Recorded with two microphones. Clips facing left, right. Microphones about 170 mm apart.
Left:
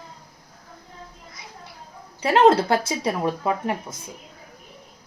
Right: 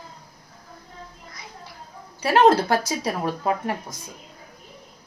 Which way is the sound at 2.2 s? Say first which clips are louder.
Left 1 dB; 20° left (ahead or behind).